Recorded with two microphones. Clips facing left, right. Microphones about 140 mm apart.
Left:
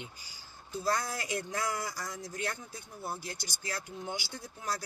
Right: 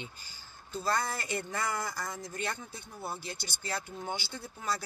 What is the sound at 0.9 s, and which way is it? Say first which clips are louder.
Speech: right 1 dB; 60° right (ahead or behind).